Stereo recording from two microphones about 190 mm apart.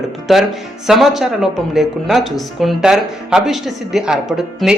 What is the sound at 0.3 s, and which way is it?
Speech, centre (ahead or behind).